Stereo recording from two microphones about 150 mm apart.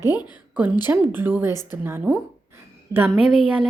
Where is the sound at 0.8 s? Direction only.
15° right (ahead or behind).